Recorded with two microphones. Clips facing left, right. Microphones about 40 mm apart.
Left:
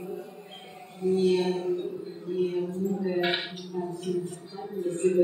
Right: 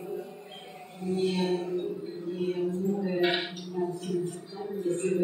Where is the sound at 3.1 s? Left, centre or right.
Centre.